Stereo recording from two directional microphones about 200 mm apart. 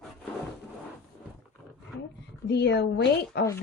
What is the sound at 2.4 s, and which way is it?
A woman's voice, 60° left (ahead or behind).